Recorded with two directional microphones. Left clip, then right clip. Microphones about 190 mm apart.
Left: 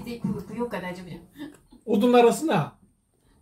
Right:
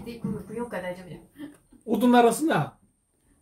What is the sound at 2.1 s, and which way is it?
Speech, 55° right (ahead or behind).